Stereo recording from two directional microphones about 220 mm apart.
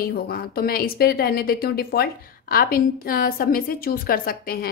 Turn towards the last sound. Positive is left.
turn(degrees=40)  # may be behind; listen again after turning